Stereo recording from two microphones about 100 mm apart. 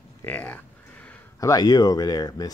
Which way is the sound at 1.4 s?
40° left (ahead or behind).